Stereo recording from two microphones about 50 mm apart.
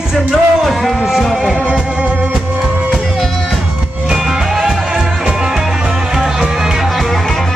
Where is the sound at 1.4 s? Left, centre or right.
Centre.